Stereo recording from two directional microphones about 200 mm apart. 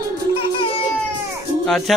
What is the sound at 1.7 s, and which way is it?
Speech, centre (ahead or behind).